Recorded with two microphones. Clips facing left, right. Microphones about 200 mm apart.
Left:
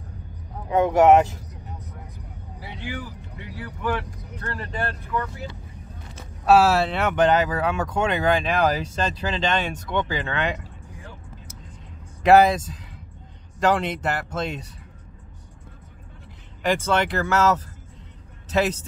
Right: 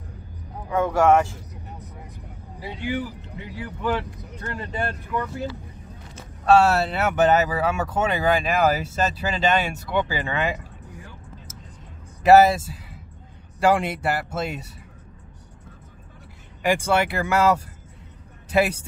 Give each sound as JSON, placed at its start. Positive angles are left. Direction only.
{"t": 0.7, "sound": "speech", "side_deg": 20}
{"t": 3.6, "sound": "speech", "side_deg": -20}
{"t": 6.4, "sound": "speech", "side_deg": 5}
{"t": 12.2, "sound": "speech", "side_deg": -5}
{"t": 16.6, "sound": "speech", "side_deg": -10}